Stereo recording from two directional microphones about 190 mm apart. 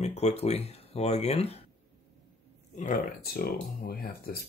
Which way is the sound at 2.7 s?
45° left (ahead or behind).